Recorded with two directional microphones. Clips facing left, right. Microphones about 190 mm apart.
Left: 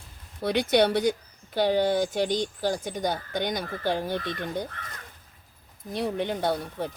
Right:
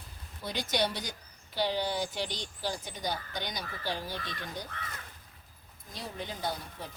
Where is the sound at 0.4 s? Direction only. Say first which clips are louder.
Left 10 dB; 65° left (ahead or behind).